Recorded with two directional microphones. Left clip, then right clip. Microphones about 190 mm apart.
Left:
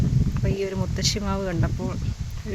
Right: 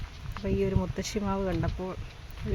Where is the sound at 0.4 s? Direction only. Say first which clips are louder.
Left 1 dB; 5° left (ahead or behind).